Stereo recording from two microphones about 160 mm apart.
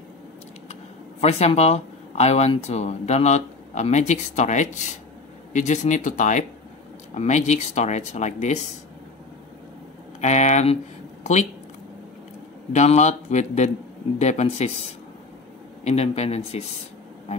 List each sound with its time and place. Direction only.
1.2 s speech: 40° left (ahead or behind)
10.2 s speech: 45° left (ahead or behind)
12.7 s speech: 45° left (ahead or behind)